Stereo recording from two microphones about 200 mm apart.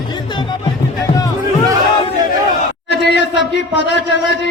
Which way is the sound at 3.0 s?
60° left (ahead or behind).